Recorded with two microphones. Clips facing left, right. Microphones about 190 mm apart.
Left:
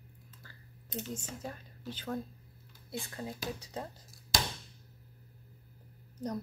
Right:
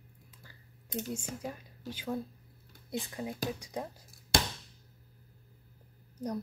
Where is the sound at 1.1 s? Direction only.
10° right (ahead or behind).